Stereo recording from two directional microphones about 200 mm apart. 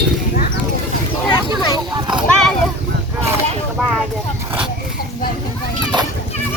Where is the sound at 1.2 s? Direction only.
20° left (ahead or behind).